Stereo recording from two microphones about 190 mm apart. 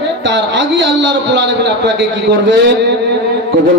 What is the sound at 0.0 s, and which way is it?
A man's voice, 70° right (ahead or behind).